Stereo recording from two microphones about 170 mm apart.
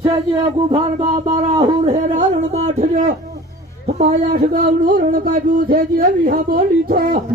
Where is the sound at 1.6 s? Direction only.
40° right (ahead or behind); by 7.2 s 55° right (ahead or behind).